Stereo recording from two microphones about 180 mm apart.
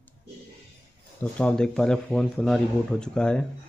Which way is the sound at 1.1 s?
5° left (ahead or behind).